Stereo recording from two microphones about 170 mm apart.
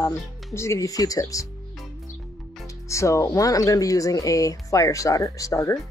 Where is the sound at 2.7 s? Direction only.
15° left (ahead or behind).